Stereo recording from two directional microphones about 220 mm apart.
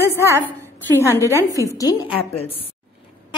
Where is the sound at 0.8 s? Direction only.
10° left (ahead or behind).